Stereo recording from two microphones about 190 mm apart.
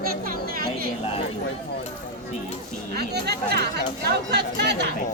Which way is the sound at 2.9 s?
55° right (ahead or behind).